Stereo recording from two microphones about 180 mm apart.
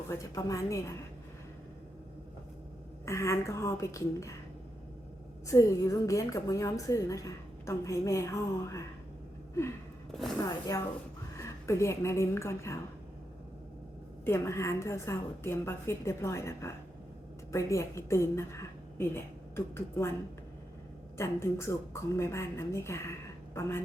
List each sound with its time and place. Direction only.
0.1 s a woman's voice: 20° left (ahead or behind)
3.1 s a woman's voice: 15° left (ahead or behind)
5.5 s a woman's voice: 20° left (ahead or behind)
11.3 s a woman's voice: 15° left (ahead or behind)
14.3 s a woman's voice: 15° left (ahead or behind)
21.2 s a woman's voice: 15° left (ahead or behind)